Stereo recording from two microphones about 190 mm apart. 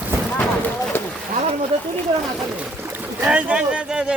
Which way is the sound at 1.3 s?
35° right (ahead or behind).